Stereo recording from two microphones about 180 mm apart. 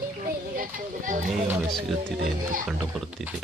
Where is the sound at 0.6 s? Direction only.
50° right (ahead or behind).